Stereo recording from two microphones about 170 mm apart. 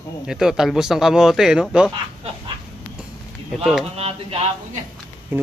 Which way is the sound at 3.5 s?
Centre (ahead or behind).